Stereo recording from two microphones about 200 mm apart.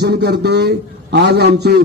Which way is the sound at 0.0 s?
55° right (ahead or behind).